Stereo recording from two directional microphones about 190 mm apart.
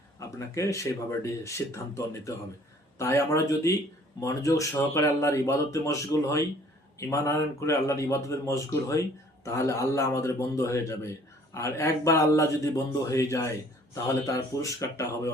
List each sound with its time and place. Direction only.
0.2 s speech: 15° left (ahead or behind)